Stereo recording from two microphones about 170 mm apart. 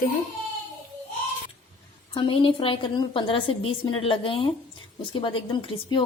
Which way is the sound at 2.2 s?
30° left (ahead or behind).